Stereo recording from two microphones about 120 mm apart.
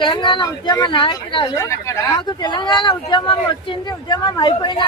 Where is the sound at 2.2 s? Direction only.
40° left (ahead or behind).